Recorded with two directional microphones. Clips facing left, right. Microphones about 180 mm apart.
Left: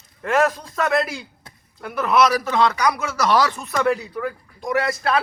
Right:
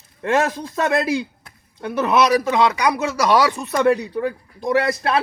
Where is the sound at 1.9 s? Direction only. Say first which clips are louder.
Right 2 dB; 25° right (ahead or behind).